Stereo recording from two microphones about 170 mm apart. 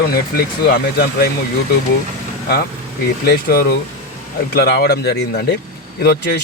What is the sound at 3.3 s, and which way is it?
Speech, 60° left (ahead or behind).